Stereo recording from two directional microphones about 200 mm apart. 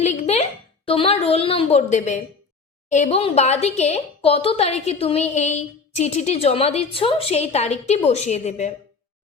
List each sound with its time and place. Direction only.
0.0 s a woman's voice: 35° left (ahead or behind)